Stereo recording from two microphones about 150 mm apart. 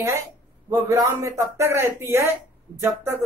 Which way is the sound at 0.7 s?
20° right (ahead or behind).